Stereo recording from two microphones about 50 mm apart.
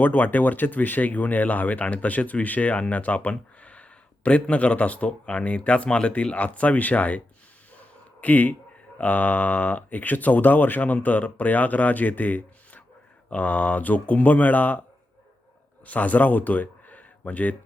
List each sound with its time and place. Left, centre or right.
0.0 s speech: left
7.8 s a sound: left
9.0 s speech: left
15.9 s speech: left